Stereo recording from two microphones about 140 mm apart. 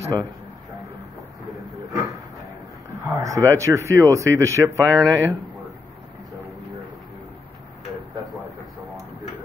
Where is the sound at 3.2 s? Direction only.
20° right (ahead or behind).